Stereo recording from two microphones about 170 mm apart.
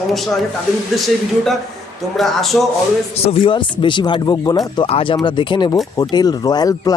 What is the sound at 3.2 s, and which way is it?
Speech, 35° left (ahead or behind).